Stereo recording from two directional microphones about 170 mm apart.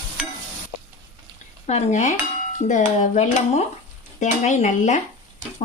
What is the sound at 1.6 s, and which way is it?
Speech, 45° left (ahead or behind).